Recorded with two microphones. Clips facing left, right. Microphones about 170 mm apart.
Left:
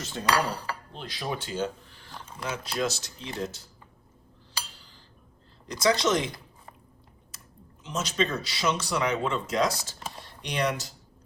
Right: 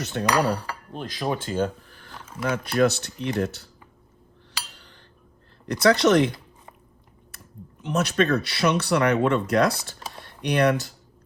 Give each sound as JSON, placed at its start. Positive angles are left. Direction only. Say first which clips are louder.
{"t": 0.0, "sound": "speech", "louder": "right 7 dB", "side_deg": -70}
{"t": 0.9, "sound": "speech", "louder": "right 8 dB", "side_deg": -45}
{"t": 2.1, "sound": "a sound", "louder": "right 2 dB", "side_deg": -5}
{"t": 2.4, "sound": "speech", "louder": "right 9 dB", "side_deg": -60}
{"t": 4.8, "sound": "a sound", "louder": "right 4 dB", "side_deg": -65}
{"t": 5.6, "sound": "speech", "louder": "right 6 dB", "side_deg": -60}